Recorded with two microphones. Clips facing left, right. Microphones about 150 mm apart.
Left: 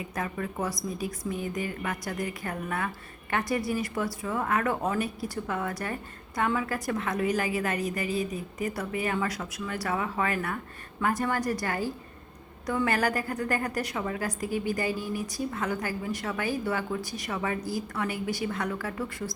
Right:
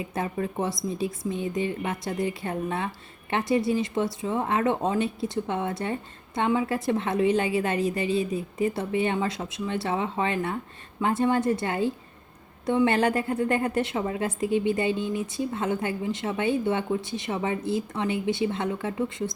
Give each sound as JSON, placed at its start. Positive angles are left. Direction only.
{"t": 0.0, "sound": "a woman's voice", "side_deg": -25}